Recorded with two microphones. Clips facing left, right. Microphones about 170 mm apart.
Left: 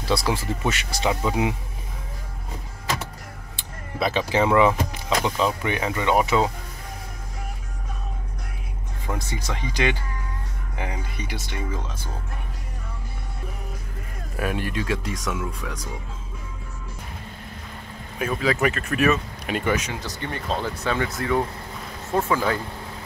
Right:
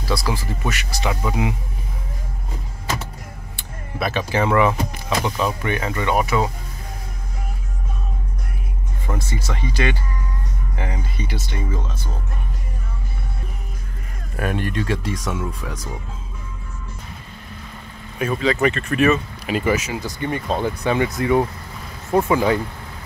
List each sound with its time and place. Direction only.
0.0 s speech: 25° left (ahead or behind)
4.3 s speech: 15° left (ahead or behind)
9.0 s speech: 15° left (ahead or behind)
14.3 s speech: 5° left (ahead or behind)
18.2 s speech: centre (ahead or behind); by 22.6 s 15° right (ahead or behind)